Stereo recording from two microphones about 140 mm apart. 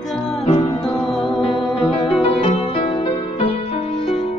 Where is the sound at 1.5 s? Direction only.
35° left (ahead or behind).